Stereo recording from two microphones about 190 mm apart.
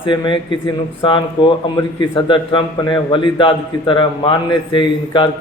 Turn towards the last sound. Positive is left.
turn(degrees=25)  # may be behind; listen again after turning